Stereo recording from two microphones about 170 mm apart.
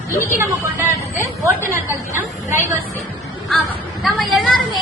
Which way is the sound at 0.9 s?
20° right (ahead or behind).